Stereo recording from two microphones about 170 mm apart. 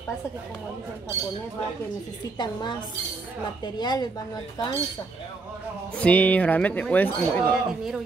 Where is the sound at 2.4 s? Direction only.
25° left (ahead or behind).